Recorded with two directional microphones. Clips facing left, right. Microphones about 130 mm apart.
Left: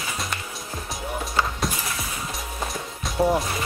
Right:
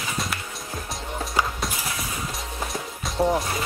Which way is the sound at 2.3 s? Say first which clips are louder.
Even; centre (ahead or behind).